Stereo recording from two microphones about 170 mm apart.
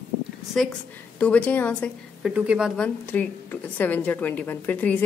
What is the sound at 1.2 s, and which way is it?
Speech, 10° left (ahead or behind).